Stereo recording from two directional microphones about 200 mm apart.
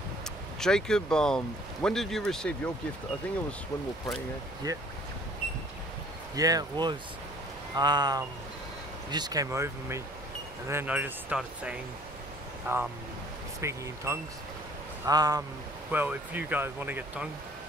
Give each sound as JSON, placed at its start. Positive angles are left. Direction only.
{"t": 0.6, "sound": "speech", "side_deg": 5}
{"t": 4.6, "sound": "speech", "side_deg": -20}
{"t": 6.3, "sound": "speech", "side_deg": -20}